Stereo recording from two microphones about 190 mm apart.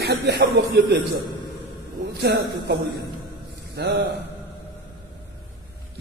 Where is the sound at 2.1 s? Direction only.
60° right (ahead or behind).